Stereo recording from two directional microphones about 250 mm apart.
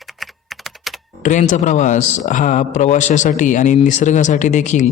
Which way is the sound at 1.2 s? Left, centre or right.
Left.